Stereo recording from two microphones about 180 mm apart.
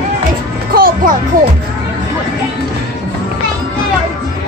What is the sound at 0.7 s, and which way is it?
Music, 55° right (ahead or behind).